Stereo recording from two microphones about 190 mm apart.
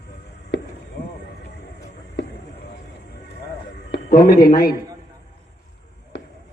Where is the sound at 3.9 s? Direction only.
50° left (ahead or behind).